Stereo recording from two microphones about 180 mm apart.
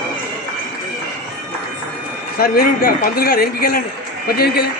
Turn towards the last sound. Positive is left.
turn(degrees=60)  # may be behind; listen again after turning